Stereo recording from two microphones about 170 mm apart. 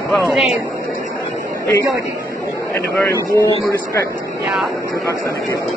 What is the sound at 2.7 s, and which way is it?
Speech, 15° left (ahead or behind).